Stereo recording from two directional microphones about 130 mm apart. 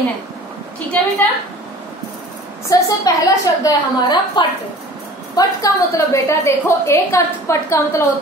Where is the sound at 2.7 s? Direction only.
25° left (ahead or behind).